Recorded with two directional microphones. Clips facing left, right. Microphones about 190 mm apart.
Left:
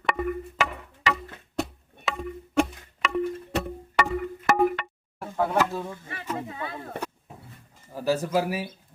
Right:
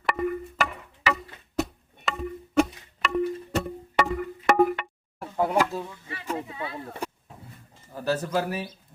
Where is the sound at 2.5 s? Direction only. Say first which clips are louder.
Right 2 dB; centre (ahead or behind).